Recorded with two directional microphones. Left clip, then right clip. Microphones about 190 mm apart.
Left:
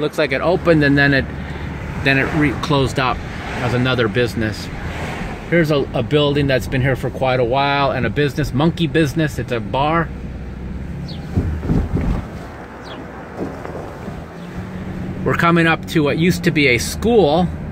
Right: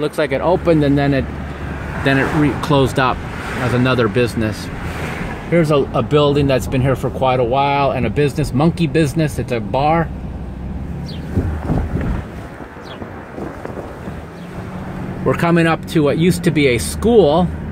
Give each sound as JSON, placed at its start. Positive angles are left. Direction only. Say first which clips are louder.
{"t": 0.0, "sound": "speech", "louder": "even", "side_deg": -15}
{"t": 5.5, "sound": "speech", "louder": "right 2 dB", "side_deg": -5}
{"t": 7.2, "sound": "speech", "louder": "right 1 dB", "side_deg": 10}
{"t": 15.2, "sound": "speech", "louder": "even", "side_deg": -10}